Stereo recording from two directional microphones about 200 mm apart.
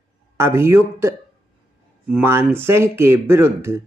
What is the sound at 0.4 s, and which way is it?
Speech, 15° right (ahead or behind).